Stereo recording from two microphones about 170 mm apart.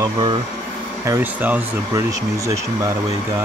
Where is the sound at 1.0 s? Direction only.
15° right (ahead or behind).